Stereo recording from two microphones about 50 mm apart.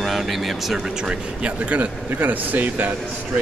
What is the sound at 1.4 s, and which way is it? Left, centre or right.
Speech, right.